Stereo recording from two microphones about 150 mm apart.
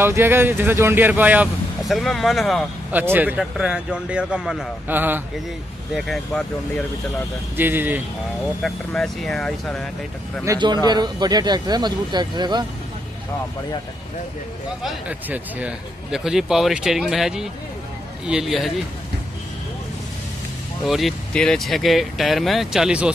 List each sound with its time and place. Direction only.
0.0 s a man's voice: 15° right (ahead or behind)
1.8 s speech: centre (ahead or behind)
2.9 s a man's voice: 10° right (ahead or behind)
5.9 s speech: centre (ahead or behind)
7.5 s a man's voice: 15° right (ahead or behind)
8.6 s speech: 5° left (ahead or behind)
10.4 s speech: 25° right (ahead or behind)
14.8 s speech: 5° right (ahead or behind)
20.8 s speech: centre (ahead or behind)